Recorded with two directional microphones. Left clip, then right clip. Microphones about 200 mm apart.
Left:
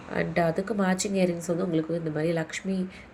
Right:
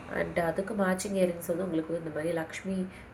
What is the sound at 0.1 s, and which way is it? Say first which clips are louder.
A woman's voice: left 4 dB; 40° left (ahead or behind).